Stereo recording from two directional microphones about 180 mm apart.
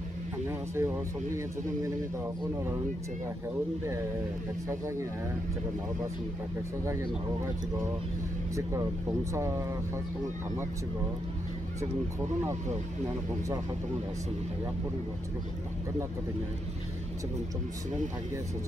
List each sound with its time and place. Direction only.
0.5 s speech: 10° right (ahead or behind)
4.6 s speech: 15° right (ahead or behind)
9.3 s speech: 15° right (ahead or behind)